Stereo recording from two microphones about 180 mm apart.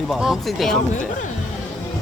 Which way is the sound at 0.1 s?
Centre (ahead or behind).